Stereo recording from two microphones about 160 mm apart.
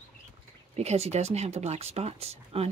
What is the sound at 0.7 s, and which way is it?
Speech, 40° right (ahead or behind).